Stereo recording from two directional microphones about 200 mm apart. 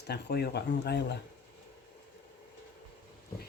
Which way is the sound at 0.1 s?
50° left (ahead or behind).